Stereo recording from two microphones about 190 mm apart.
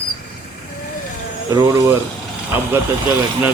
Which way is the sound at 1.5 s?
15° right (ahead or behind).